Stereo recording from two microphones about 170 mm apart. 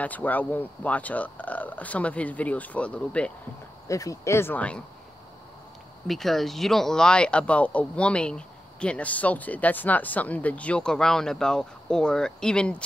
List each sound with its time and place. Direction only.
0.0 s speech: 10° left (ahead or behind)
3.8 s speech: 20° left (ahead or behind)
6.0 s speech: centre (ahead or behind)